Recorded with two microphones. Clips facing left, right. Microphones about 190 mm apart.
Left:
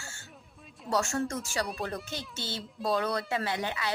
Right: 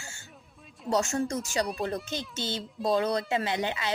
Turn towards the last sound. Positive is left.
turn(degrees=-20)  # may be behind; listen again after turning